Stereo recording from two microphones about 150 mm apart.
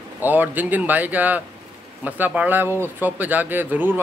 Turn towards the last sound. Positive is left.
turn(degrees=-15)  # may be behind; listen again after turning